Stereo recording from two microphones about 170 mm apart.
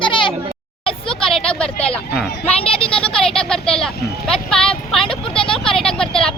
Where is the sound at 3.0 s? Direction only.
5° left (ahead or behind).